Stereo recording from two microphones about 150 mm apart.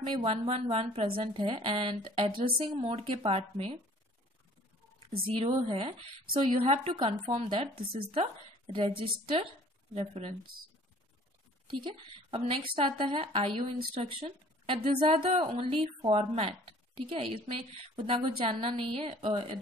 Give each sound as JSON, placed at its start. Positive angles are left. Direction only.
{"t": 0.2, "sound": "a woman's voice", "side_deg": -40}
{"t": 5.4, "sound": "a woman's voice", "side_deg": -40}
{"t": 11.6, "sound": "a woman's voice", "side_deg": -35}